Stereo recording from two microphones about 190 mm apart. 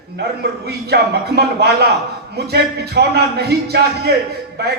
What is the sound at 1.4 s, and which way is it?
A man's voice, 60° right (ahead or behind).